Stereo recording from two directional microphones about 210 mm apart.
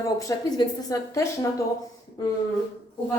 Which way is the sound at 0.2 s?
20° left (ahead or behind).